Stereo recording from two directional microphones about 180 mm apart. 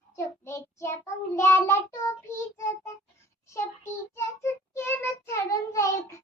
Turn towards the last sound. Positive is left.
turn(degrees=15)  # may be behind; listen again after turning